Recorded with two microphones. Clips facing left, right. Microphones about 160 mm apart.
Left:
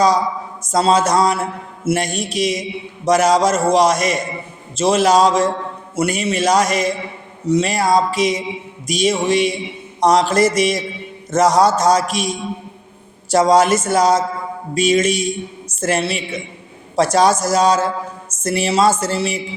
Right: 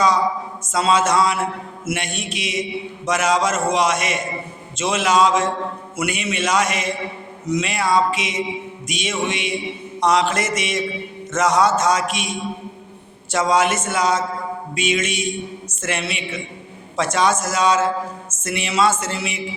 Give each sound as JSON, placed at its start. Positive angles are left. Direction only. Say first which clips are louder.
{"t": 0.7, "sound": "mantra", "louder": "left 3 dB", "side_deg": 35}